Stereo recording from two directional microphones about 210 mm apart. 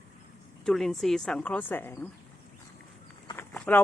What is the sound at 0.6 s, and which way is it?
A woman's voice, centre (ahead or behind).